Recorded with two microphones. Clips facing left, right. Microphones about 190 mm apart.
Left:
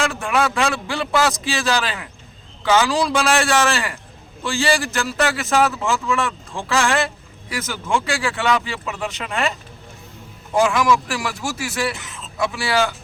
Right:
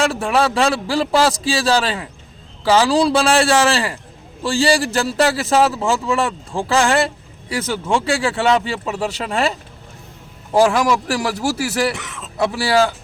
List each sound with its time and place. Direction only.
0.0 s a man's voice: 35° right (ahead or behind)
11.9 s speech: 75° right (ahead or behind)
12.4 s a man's voice: 35° right (ahead or behind)